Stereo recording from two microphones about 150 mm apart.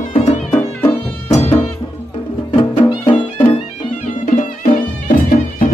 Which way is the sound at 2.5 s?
35° left (ahead or behind).